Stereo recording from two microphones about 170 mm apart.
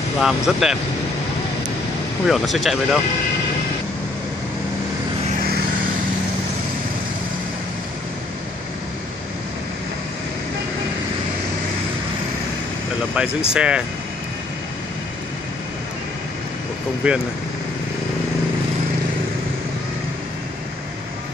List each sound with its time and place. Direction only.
0.2 s speech: 5° right (ahead or behind)
2.2 s speech: centre (ahead or behind)
13.5 s speech: 5° right (ahead or behind)
17.0 s speech: 5° right (ahead or behind)